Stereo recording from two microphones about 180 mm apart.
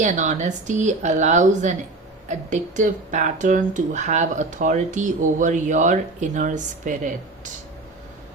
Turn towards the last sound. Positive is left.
turn(degrees=-45)  # may be behind; listen again after turning